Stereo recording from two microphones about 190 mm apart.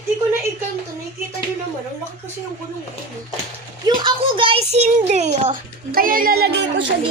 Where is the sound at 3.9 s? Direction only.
25° right (ahead or behind); by 6.5 s 50° right (ahead or behind).